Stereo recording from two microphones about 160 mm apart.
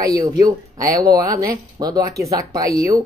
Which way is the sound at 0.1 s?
25° right (ahead or behind).